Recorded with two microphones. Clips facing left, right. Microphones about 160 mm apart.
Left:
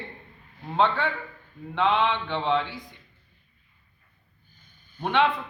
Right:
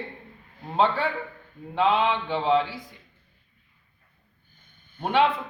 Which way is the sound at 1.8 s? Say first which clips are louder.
Right 1 dB; 10° right (ahead or behind).